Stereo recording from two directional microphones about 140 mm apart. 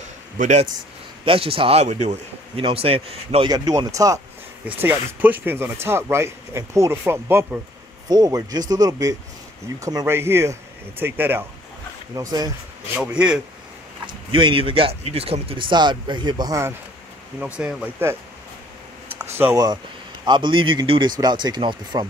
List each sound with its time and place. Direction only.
0.0 s a sound: 60° right (ahead or behind)
1.2 s speech: 40° right (ahead or behind)
2.5 s speech: 40° right (ahead or behind)
3.4 s speech: 25° right (ahead or behind)
4.8 s speech: 15° right (ahead or behind)
8.1 s speech: 30° right (ahead or behind)
12.2 s speech: 25° right (ahead or behind)
12.9 s speech: 10° right (ahead or behind)
14.0 s speech: 35° right (ahead or behind)
17.6 s speech: 5° right (ahead or behind)
19.3 s speech: 15° right (ahead or behind)
20.2 s speech: 35° right (ahead or behind)